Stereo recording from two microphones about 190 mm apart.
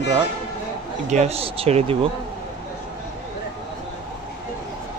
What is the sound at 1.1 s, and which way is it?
Speech, 35° right (ahead or behind).